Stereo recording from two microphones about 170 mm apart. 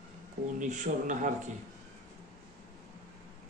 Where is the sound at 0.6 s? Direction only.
45° right (ahead or behind).